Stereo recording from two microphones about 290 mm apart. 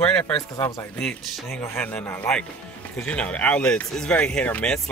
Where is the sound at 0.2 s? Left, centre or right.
Centre.